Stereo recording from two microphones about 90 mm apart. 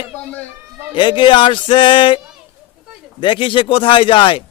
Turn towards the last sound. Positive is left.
turn(degrees=70)  # may be behind; listen again after turning